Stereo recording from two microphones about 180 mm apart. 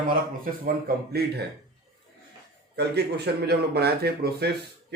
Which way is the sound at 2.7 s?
65° right (ahead or behind).